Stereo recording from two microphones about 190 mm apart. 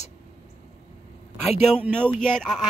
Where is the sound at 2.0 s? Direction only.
5° left (ahead or behind).